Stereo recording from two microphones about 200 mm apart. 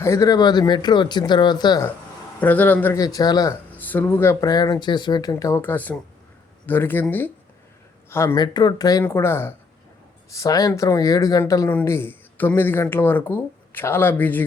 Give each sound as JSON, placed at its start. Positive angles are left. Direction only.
{"t": 0.0, "sound": "speech", "side_deg": 15}
{"t": 2.4, "sound": "speech", "side_deg": 10}